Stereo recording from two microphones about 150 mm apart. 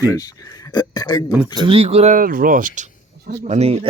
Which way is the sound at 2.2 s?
70° right (ahead or behind).